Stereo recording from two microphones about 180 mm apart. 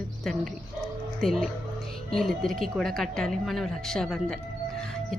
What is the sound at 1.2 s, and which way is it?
Speech, centre (ahead or behind).